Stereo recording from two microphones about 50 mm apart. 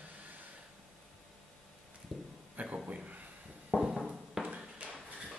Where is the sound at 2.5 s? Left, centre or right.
Right.